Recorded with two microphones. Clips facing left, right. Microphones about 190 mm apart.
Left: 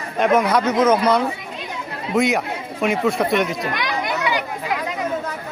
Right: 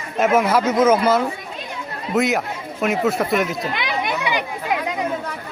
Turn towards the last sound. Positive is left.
turn(degrees=-20)  # may be behind; listen again after turning